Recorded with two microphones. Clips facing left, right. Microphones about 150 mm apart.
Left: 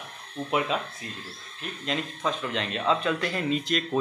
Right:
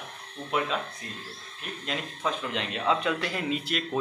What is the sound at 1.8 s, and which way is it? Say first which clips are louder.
Speech: left 2 dB; 5° right (ahead or behind).